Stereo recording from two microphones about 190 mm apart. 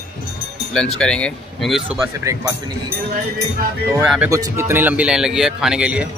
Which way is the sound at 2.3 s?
15° right (ahead or behind).